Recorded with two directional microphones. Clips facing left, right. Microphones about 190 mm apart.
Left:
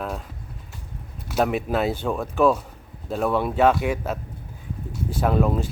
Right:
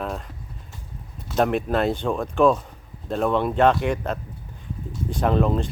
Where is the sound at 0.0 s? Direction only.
Centre (ahead or behind).